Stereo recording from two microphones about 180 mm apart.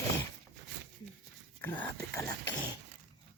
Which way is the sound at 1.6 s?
10° left (ahead or behind).